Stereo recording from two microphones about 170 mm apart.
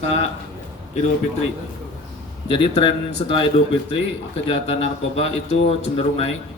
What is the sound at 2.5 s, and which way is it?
A man's voice, 35° left (ahead or behind).